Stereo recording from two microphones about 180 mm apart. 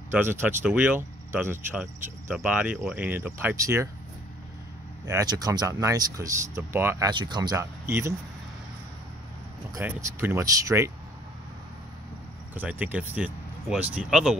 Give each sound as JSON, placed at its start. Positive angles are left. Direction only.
{"t": 0.1, "sound": "speech", "side_deg": -10}
{"t": 5.0, "sound": "speech", "side_deg": -20}
{"t": 7.1, "sound": "speech", "side_deg": -25}
{"t": 9.8, "sound": "speech", "side_deg": -10}
{"t": 12.5, "sound": "speech", "side_deg": -10}